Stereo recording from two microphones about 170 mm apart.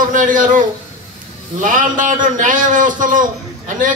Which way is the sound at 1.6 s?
50° right (ahead or behind).